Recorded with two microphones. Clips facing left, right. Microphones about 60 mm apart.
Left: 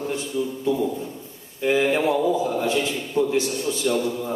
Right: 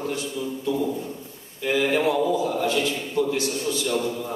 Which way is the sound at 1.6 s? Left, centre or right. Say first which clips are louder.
Left 2 dB; left.